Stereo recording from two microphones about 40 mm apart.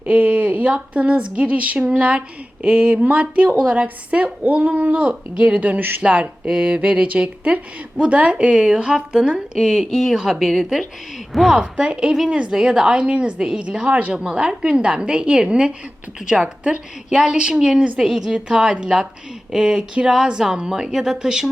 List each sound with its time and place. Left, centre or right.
0.0 s speech: right
4.1 s a woman's voice: right
5.5 s a woman's voice: right
13.8 s a woman's voice: right
14.1 s speech: right